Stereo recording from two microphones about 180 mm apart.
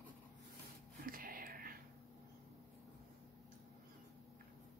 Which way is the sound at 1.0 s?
50° right (ahead or behind).